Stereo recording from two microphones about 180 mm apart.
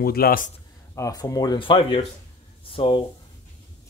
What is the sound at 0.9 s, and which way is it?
Speech, 20° left (ahead or behind).